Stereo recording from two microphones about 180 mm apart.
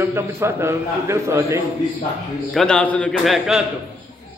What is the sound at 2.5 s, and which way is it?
A man's voice, 5° left (ahead or behind).